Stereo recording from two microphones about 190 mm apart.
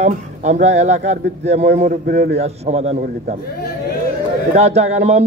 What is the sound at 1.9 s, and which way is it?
Speech, 55° right (ahead or behind).